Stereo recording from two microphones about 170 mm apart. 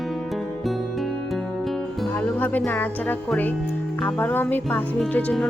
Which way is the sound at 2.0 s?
10° left (ahead or behind).